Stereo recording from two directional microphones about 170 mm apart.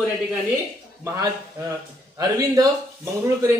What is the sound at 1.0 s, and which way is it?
Speech, 20° right (ahead or behind).